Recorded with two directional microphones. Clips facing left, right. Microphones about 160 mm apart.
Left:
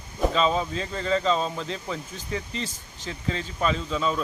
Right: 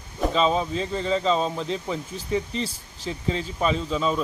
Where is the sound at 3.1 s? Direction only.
20° right (ahead or behind).